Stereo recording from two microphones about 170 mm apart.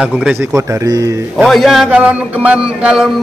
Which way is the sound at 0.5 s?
20° right (ahead or behind).